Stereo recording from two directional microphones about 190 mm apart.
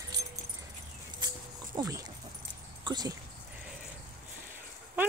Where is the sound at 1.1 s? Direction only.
20° right (ahead or behind).